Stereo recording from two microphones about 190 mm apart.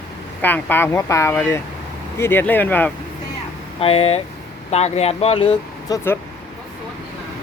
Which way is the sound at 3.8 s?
30° left (ahead or behind).